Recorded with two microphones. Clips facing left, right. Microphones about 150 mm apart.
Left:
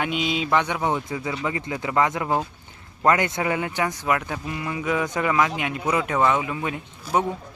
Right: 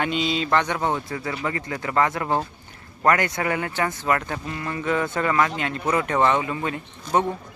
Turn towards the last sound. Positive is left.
turn(degrees=5)  # may be behind; listen again after turning